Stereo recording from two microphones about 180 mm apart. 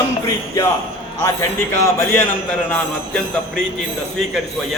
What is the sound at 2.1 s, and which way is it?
Speech, 10° left (ahead or behind).